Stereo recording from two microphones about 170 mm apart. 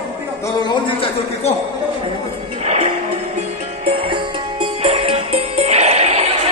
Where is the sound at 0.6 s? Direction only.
30° left (ahead or behind).